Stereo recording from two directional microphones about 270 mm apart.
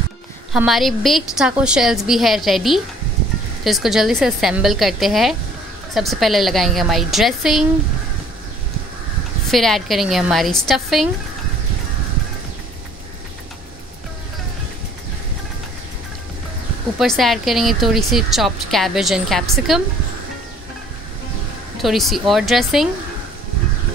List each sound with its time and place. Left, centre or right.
0.5 s a woman's voice: centre
9.5 s a woman's voice: centre
17.0 s a woman's voice: centre
21.8 s a woman's voice: centre